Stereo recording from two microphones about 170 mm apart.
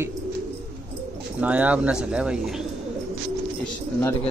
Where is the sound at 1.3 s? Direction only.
10° right (ahead or behind).